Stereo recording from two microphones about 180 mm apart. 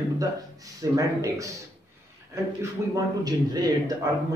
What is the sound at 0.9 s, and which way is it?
Speech, 20° right (ahead or behind).